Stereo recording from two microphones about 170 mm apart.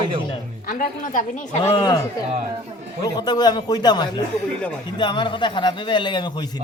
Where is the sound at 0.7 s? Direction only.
50° left (ahead or behind).